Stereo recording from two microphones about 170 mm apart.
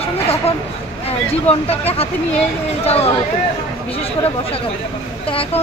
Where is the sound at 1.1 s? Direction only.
35° left (ahead or behind).